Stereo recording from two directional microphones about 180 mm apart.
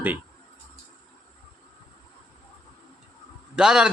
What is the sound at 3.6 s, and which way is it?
Speech, 5° right (ahead or behind).